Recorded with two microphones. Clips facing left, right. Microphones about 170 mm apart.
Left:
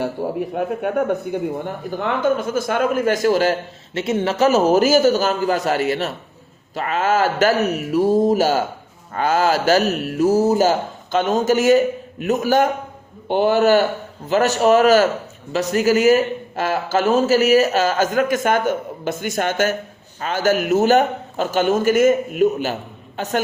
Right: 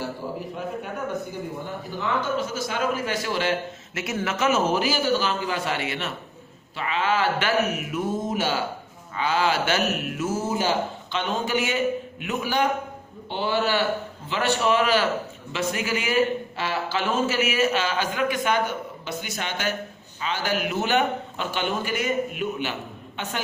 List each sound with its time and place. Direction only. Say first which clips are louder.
0.0 s a man's voice: left 8 dB; 60° left (ahead or behind); by 4.0 s 40° left (ahead or behind)
4.0 s a man's voice: left 7 dB; 25° left (ahead or behind)